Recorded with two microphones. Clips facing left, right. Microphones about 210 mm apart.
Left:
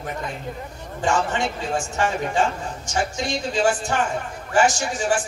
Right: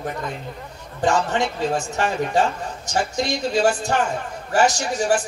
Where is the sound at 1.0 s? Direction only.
40° right (ahead or behind).